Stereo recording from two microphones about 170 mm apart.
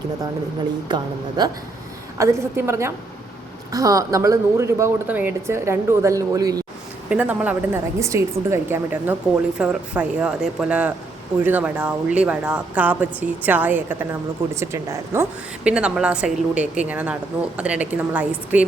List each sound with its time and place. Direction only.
0.9 s a woman's voice: 25° right (ahead or behind)
7.1 s a woman's voice: 10° right (ahead or behind)